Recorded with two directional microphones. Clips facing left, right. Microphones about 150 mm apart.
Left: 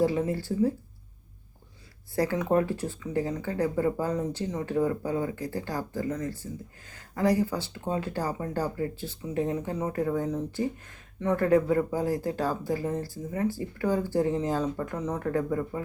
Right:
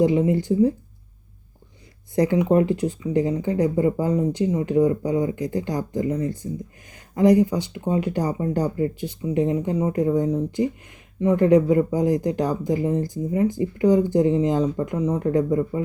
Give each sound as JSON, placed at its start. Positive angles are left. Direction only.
{"t": 0.0, "sound": "speech", "side_deg": -20}
{"t": 2.1, "sound": "speech", "side_deg": -15}